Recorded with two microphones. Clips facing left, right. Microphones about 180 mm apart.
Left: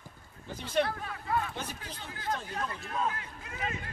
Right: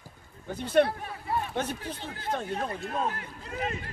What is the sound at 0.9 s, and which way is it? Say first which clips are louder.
Speech: right 1 dB; 30° right (ahead or behind).